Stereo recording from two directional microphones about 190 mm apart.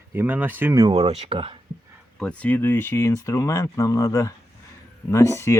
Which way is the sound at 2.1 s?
5° left (ahead or behind).